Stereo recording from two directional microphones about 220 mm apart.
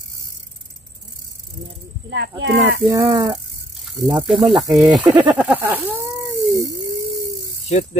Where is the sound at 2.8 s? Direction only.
15° right (ahead or behind).